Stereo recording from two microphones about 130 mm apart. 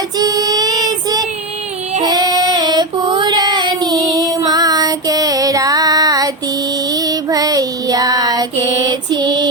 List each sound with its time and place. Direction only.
0.2 s child singing: 30° right (ahead or behind)